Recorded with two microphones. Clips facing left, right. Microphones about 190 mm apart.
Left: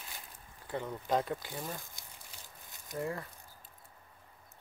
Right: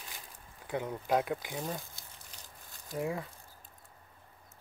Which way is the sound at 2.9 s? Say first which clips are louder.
Right 2 dB; 15° right (ahead or behind).